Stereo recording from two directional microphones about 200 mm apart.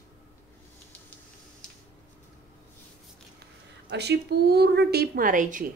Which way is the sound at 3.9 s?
55° right (ahead or behind).